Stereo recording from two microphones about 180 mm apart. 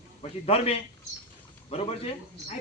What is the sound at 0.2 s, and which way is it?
Speech, 35° left (ahead or behind).